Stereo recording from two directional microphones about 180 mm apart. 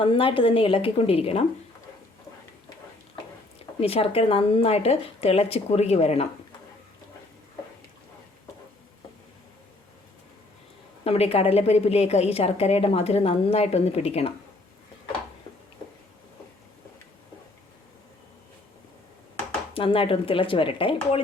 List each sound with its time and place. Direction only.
0.0 s speech: 30° left (ahead or behind)
3.8 s a woman's voice: 35° left (ahead or behind)
11.0 s a woman's voice: 35° left (ahead or behind)
19.7 s speech: 30° left (ahead or behind)